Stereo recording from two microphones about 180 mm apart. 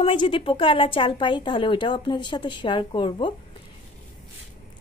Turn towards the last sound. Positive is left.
turn(degrees=25)  # may be behind; listen again after turning